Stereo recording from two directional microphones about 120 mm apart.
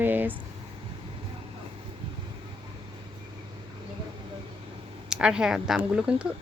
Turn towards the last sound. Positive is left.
turn(degrees=-10)  # may be behind; listen again after turning